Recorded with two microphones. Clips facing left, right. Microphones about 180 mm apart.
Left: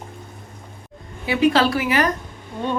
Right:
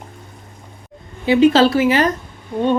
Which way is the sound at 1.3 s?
25° right (ahead or behind).